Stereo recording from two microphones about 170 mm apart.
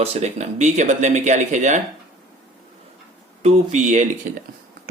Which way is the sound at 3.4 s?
40° right (ahead or behind).